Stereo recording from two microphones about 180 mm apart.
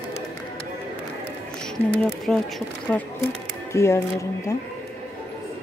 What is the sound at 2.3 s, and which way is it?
Speech, centre (ahead or behind).